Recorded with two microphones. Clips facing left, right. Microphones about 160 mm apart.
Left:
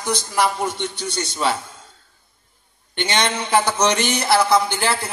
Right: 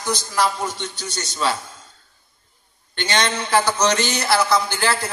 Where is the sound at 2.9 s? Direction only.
20° left (ahead or behind).